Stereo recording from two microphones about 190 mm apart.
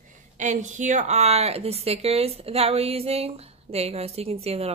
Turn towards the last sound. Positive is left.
turn(degrees=-30)  # may be behind; listen again after turning